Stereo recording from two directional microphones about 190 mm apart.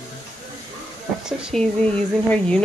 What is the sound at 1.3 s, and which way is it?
Speech, 5° right (ahead or behind).